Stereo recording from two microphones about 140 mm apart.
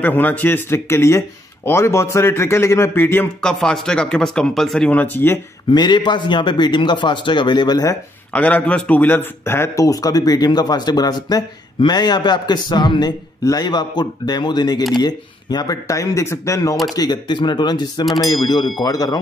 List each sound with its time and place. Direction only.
0.0 s speech: 15° left (ahead or behind)
3.3 s speech: 5° left (ahead or behind)
5.7 s a man's voice: 35° left (ahead or behind)
8.3 s a man's voice: 10° left (ahead or behind); by 19.1 s 25° left (ahead or behind)